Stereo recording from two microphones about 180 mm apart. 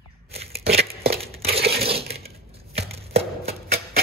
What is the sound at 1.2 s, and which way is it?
Crumpling, 35° right (ahead or behind).